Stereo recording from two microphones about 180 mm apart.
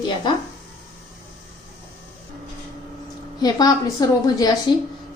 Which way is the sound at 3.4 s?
20° left (ahead or behind).